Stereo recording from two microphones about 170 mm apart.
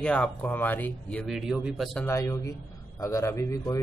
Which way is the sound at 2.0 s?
15° left (ahead or behind).